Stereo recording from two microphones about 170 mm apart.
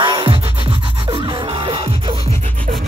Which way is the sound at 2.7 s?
50° right (ahead or behind).